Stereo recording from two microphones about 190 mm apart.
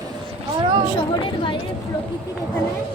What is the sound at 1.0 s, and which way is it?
Speech, 25° left (ahead or behind).